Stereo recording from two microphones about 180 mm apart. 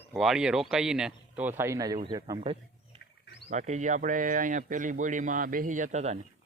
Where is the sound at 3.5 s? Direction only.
40° right (ahead or behind).